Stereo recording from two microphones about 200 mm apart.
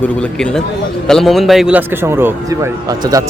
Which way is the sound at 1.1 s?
Centre (ahead or behind).